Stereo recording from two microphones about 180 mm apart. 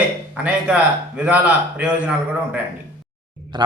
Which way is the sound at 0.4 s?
5° right (ahead or behind).